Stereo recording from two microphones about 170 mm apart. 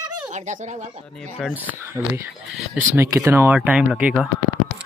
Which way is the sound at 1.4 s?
10° right (ahead or behind).